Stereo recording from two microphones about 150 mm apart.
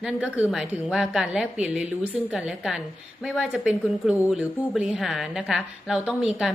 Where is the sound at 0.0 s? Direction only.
5° right (ahead or behind).